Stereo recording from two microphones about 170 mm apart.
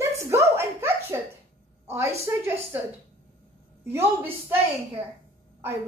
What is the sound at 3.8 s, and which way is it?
Speech, 10° right (ahead or behind).